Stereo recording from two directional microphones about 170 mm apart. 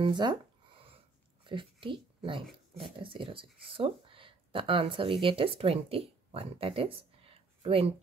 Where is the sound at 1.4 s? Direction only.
30° right (ahead or behind).